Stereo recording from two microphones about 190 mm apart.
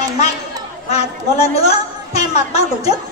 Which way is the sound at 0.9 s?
35° left (ahead or behind).